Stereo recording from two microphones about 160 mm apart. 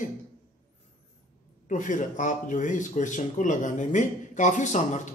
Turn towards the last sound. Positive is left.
turn(degrees=50)  # may be behind; listen again after turning